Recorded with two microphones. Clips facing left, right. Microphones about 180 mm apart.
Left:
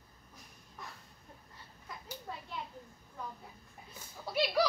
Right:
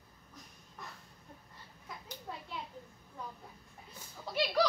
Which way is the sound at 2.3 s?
5° right (ahead or behind).